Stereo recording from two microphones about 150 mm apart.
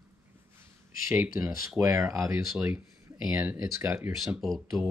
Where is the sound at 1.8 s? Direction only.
20° right (ahead or behind).